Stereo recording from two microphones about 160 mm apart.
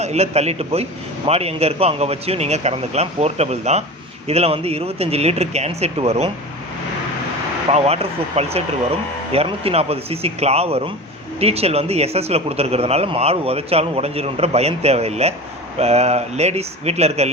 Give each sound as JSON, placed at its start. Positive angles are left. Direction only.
{"t": 0.0, "sound": "speech", "side_deg": -40}
{"t": 7.7, "sound": "speech", "side_deg": -40}